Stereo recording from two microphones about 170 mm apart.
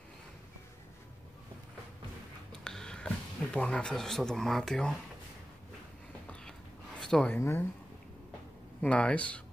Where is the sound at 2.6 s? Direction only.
5° left (ahead or behind).